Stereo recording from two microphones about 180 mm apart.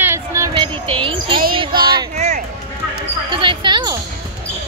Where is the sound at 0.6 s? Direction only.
30° right (ahead or behind).